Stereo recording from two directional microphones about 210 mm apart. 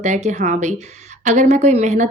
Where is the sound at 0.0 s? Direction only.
35° right (ahead or behind).